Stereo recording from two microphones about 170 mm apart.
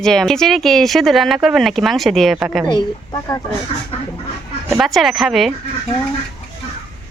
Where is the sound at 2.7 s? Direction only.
25° left (ahead or behind).